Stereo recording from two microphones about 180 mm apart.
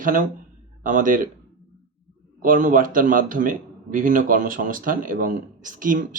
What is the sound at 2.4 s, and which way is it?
Speech, 50° right (ahead or behind).